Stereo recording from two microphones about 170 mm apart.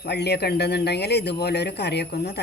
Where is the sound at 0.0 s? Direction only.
80° left.